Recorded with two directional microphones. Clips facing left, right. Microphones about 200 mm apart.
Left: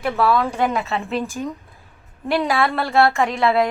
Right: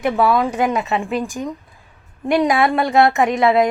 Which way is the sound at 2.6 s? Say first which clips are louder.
Right 3 dB; 20° right (ahead or behind).